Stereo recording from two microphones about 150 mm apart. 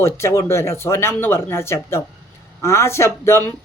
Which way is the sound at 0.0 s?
20° left (ahead or behind).